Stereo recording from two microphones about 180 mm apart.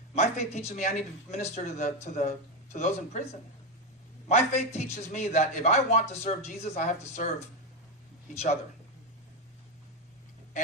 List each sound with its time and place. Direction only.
0.2 s a man's voice: 40° left (ahead or behind)
4.3 s a man's voice: 40° left (ahead or behind)